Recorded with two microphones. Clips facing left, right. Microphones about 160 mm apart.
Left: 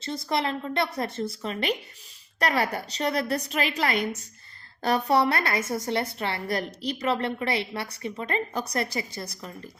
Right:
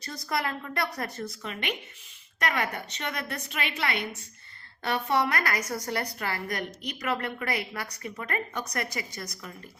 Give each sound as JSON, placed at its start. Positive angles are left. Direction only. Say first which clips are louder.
{"t": 0.0, "sound": "a woman's voice", "louder": "left 4 dB", "side_deg": 25}